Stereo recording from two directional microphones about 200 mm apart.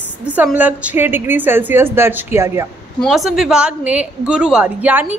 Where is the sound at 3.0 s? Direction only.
Centre (ahead or behind).